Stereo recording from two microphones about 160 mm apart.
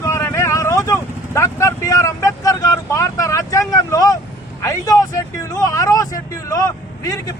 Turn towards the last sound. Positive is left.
turn(degrees=20)  # may be behind; listen again after turning